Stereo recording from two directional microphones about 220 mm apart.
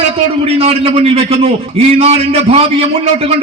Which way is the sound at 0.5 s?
25° right (ahead or behind).